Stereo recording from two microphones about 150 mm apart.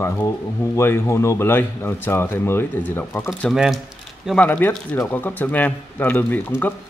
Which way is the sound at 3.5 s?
5° right (ahead or behind).